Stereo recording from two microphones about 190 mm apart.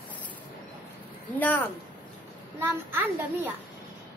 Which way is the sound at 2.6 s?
10° right (ahead or behind).